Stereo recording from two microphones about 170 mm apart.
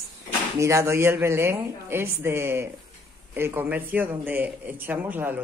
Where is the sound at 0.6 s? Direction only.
15° right (ahead or behind).